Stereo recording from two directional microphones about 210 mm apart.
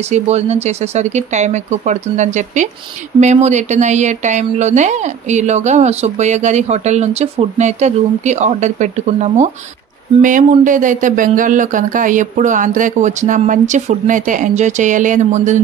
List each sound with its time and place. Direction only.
0.1 s speech: 30° right (ahead or behind)